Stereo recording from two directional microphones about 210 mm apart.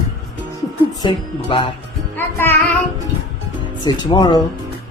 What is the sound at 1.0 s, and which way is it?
Speech, 25° left (ahead or behind).